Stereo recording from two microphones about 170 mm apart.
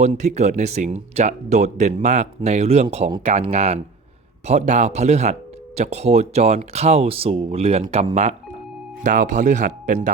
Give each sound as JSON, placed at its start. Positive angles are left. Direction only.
{"t": 0.0, "sound": "speech", "side_deg": -45}